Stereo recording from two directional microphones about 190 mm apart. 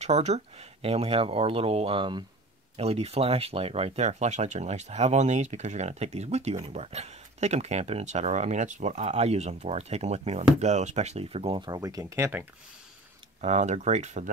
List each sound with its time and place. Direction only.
0.0 s speech: 35° right (ahead or behind); by 12.4 s 15° right (ahead or behind)
13.4 s speech: 35° right (ahead or behind)